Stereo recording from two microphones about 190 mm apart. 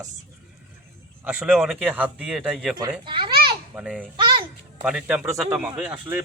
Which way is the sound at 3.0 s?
25° right (ahead or behind).